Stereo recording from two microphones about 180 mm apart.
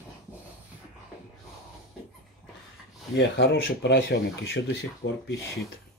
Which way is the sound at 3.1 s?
90° left.